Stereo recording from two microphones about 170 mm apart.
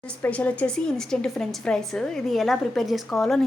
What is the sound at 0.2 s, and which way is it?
A woman's voice, 10° left (ahead or behind).